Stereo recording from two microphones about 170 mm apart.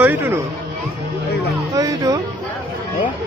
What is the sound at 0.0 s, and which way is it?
Speech, 10° right (ahead or behind).